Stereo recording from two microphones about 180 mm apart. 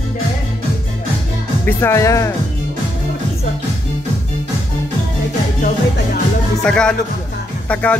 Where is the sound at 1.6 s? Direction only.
15° left (ahead or behind).